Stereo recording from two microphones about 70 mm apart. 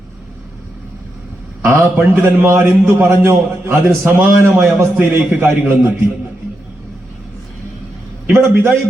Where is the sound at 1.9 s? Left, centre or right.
Right.